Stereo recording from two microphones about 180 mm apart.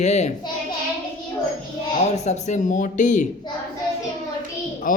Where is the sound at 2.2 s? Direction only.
40° left (ahead or behind).